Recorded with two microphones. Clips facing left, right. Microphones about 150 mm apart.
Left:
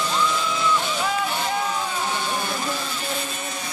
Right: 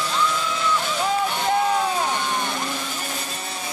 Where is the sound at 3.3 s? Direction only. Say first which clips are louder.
Left 1 dB; 35° right (ahead or behind).